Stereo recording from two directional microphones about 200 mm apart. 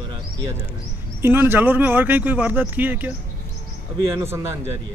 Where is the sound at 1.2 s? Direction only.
10° right (ahead or behind).